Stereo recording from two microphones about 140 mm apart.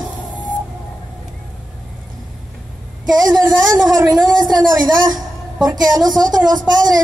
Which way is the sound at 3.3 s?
25° right (ahead or behind).